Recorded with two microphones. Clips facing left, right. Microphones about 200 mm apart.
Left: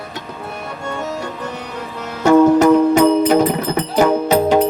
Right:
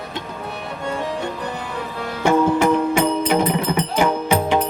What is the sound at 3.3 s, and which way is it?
Music, 40° left (ahead or behind).